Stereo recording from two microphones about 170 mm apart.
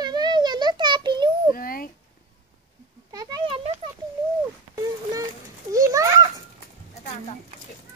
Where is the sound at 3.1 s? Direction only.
20° right (ahead or behind).